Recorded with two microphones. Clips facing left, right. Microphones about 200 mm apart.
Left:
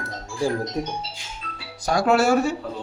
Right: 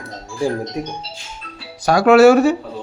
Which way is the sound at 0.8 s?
10° right (ahead or behind).